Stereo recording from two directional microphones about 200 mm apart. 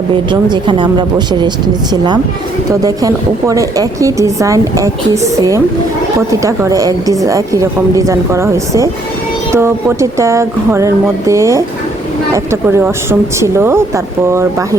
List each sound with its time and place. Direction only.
0.1 s speech: 25° right (ahead or behind)